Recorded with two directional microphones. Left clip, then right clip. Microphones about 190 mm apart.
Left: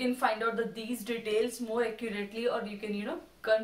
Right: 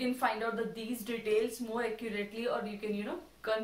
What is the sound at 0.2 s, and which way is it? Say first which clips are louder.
A woman's voice: left 3 dB; 20° left (ahead or behind).